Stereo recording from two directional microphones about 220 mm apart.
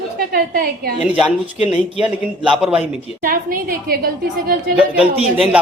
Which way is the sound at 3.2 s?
40° right (ahead or behind).